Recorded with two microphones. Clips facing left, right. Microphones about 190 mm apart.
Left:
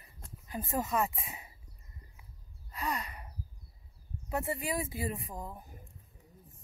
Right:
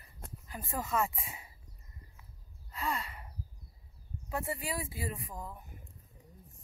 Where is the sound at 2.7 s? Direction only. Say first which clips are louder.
Even; 15° left (ahead or behind).